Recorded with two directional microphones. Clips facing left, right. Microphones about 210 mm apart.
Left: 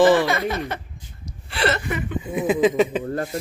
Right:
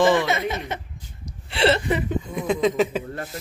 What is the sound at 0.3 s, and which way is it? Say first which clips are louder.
Speech: left 1 dB; 20° right (ahead or behind).